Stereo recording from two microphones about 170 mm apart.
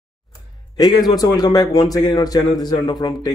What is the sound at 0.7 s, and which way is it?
Speech, 25° left (ahead or behind).